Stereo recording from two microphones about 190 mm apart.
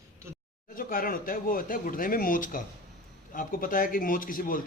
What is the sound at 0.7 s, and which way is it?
Speech, 50° left (ahead or behind).